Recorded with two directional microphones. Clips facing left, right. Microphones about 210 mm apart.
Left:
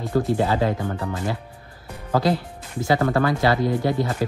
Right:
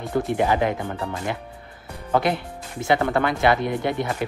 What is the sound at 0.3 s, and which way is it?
Speech, 20° right (ahead or behind).